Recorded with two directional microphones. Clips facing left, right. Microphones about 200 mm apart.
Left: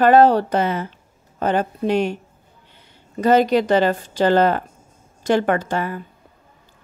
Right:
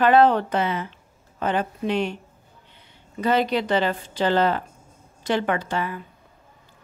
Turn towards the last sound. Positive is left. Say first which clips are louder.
# left 4 dB
turn(degrees=45)  # may be behind; listen again after turning